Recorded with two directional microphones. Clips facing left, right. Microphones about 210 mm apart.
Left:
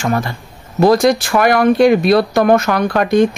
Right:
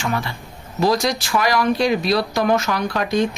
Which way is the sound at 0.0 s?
45° left (ahead or behind).